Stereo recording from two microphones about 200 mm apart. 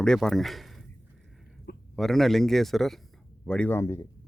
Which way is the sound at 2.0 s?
Centre (ahead or behind).